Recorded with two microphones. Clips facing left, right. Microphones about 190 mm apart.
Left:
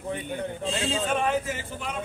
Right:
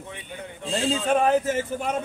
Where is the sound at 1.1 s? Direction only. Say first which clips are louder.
Right 8 dB; 40° right (ahead or behind).